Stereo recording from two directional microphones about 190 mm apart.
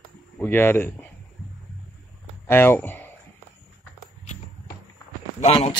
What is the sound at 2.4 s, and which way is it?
Speech, 10° left (ahead or behind).